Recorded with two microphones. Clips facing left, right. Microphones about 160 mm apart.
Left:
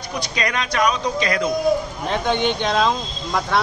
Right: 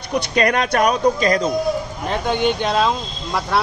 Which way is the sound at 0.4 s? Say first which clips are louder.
Right 4 dB; 55° right (ahead or behind).